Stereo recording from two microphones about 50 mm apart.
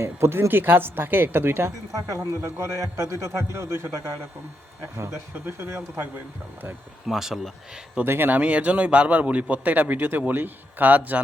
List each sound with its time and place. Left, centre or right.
0.0 s speech: right
2.1 s a man's voice: right
7.1 s speech: centre
8.0 s speech: right
8.3 s a man's voice: right